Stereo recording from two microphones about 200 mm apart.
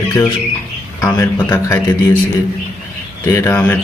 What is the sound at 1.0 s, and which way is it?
Speech, 10° left (ahead or behind).